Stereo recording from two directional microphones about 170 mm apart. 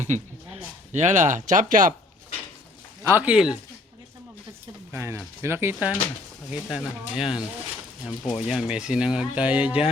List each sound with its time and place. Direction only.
0.0 s speech: 40° right (ahead or behind)
3.0 s speech: 15° right (ahead or behind)
4.9 s speech: 15° right (ahead or behind)
8.4 s speech: 5° right (ahead or behind)